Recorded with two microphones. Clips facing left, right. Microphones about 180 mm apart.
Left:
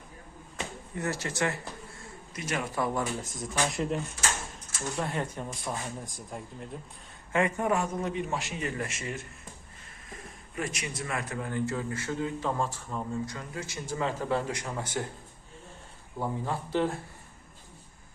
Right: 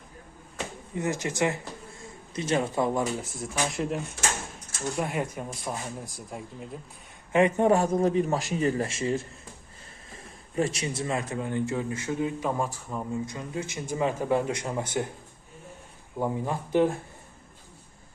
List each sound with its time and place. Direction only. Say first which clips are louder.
0.9 s speech: right 4 dB; 15° right (ahead or behind)
3.4 s speech: even; 5° right (ahead or behind)
4.9 s speech: right 2 dB; 10° right (ahead or behind)
7.3 s a man's voice: right 6 dB; 25° right (ahead or behind)
16.1 s speech: right 3 dB; 15° right (ahead or behind)